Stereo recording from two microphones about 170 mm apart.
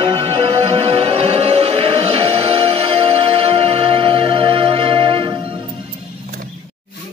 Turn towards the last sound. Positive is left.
turn(degrees=-30)  # may be behind; listen again after turning